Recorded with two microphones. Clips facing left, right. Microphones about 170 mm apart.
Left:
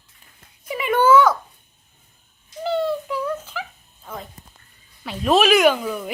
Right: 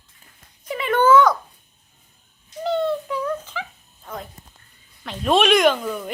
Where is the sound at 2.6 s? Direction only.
5° left (ahead or behind).